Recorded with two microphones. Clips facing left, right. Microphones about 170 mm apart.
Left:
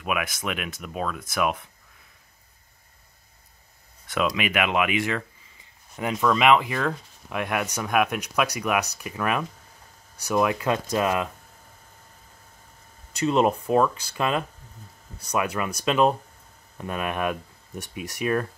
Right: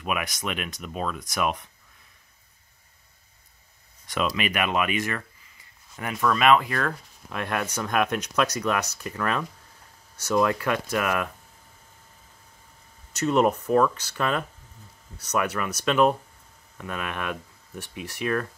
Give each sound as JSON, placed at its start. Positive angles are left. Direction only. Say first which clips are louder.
{"t": 0.0, "sound": "speech", "louder": "left 1 dB", "side_deg": 5}
{"t": 4.3, "sound": "speech", "louder": "left 1 dB", "side_deg": 10}
{"t": 13.2, "sound": "speech", "louder": "even", "side_deg": 20}